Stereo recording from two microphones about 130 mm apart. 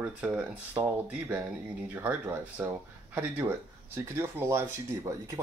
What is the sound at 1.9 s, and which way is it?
Speech, 10° right (ahead or behind).